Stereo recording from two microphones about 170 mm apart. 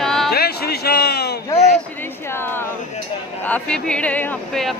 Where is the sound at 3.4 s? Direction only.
5° left (ahead or behind).